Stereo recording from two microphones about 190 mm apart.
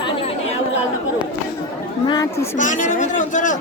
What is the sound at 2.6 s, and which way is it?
Speech, 40° left (ahead or behind).